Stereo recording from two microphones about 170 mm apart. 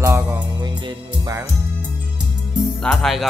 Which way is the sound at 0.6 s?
25° right (ahead or behind).